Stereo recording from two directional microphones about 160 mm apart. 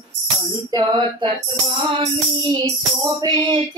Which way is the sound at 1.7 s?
30° right (ahead or behind).